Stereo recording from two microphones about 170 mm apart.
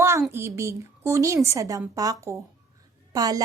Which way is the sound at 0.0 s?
15° right (ahead or behind).